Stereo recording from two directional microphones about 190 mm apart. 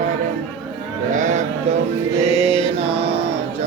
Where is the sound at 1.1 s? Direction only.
40° right (ahead or behind).